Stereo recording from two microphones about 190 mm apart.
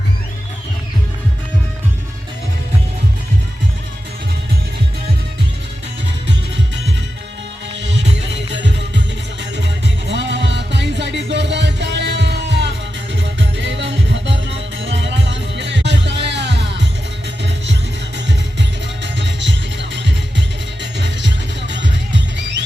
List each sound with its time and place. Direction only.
7.8 s music: 70° right (ahead or behind)
19.0 s music: 70° right (ahead or behind)